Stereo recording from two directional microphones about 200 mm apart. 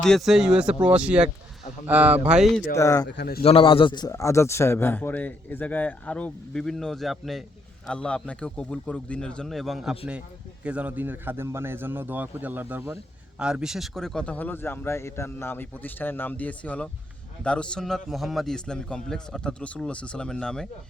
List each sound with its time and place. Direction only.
0.0 s a man's voice: centre (ahead or behind)
2.7 s a man's voice: 15° left (ahead or behind)
3.2 s a man's voice: 50° left (ahead or behind)
3.4 s a man's voice: 25° left (ahead or behind); by 20.7 s 5° left (ahead or behind)